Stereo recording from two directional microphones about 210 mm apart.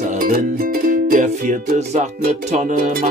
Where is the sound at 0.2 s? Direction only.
45° right (ahead or behind).